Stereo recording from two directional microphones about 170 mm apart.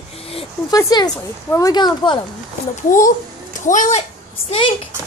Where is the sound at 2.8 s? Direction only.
50° left (ahead or behind).